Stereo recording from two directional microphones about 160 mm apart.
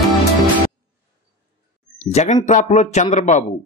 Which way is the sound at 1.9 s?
45° left (ahead or behind).